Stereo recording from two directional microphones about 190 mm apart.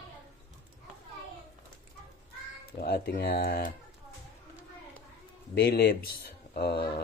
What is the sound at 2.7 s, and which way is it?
Speech, 55° left (ahead or behind).